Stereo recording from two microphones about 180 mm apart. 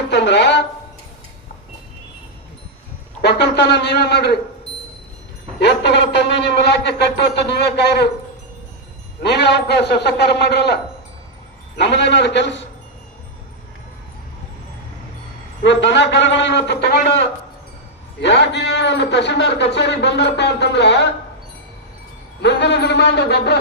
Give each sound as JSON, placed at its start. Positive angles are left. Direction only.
{"t": 0.1, "sound": "a sound", "side_deg": 70}
{"t": 3.2, "sound": "a man's voice", "side_deg": 70}
{"t": 5.5, "sound": "a man's voice", "side_deg": 70}
{"t": 9.2, "sound": "a man's voice", "side_deg": 70}
{"t": 11.8, "sound": "a man's voice", "side_deg": 75}
{"t": 15.6, "sound": "a man's voice", "side_deg": 75}
{"t": 22.4, "sound": "a man's voice", "side_deg": 70}